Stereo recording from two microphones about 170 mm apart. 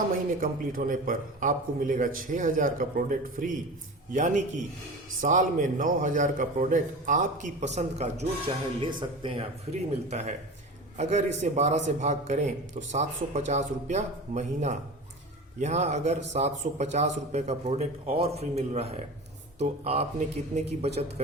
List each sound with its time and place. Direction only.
0.1 s a man's voice: 55° right (ahead or behind); by 8.3 s 40° right (ahead or behind)
8.8 s speech: 30° right (ahead or behind)
9.7 s a man's voice: 40° right (ahead or behind)